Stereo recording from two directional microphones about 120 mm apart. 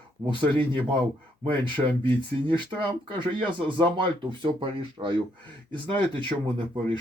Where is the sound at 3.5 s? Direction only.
40° right (ahead or behind).